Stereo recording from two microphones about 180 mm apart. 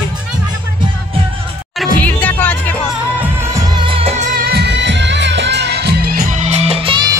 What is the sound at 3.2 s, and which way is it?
Music, 15° right (ahead or behind).